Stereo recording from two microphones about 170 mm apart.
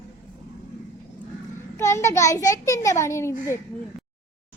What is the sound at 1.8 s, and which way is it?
A child's voice, 15° left (ahead or behind).